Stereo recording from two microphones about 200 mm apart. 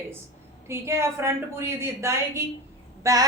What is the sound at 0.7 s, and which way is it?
A woman's voice, 15° right (ahead or behind).